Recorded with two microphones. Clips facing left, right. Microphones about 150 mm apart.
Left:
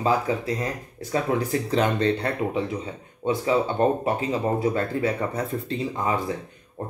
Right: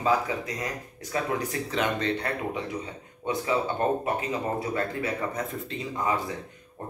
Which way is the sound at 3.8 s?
25° left (ahead or behind).